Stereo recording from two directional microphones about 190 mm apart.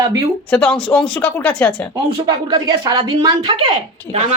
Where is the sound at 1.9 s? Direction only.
20° right (ahead or behind).